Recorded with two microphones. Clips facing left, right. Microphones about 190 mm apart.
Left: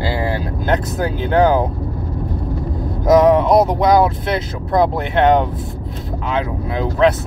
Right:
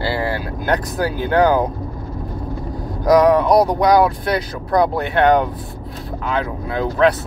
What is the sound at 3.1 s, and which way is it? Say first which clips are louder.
Speech: left 1 dB; 20° left (ahead or behind).